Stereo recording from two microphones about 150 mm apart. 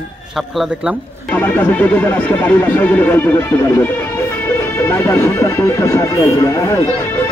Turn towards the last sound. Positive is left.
turn(degrees=20)  # may be behind; listen again after turning